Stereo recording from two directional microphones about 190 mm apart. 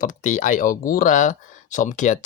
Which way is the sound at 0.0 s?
40° left (ahead or behind).